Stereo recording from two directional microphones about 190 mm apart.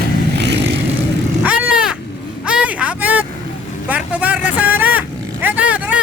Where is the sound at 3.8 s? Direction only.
5° right (ahead or behind).